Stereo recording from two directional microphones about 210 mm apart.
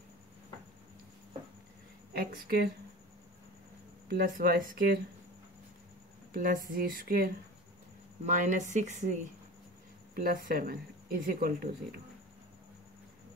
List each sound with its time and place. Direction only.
2.1 s a woman's voice: 45° right (ahead or behind)
4.1 s a woman's voice: 45° right (ahead or behind)
6.3 s a woman's voice: 45° right (ahead or behind)